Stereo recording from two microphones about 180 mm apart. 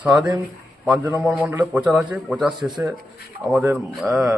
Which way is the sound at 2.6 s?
25° right (ahead or behind).